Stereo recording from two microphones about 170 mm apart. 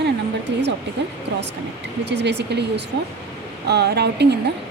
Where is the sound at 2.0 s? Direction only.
80° right.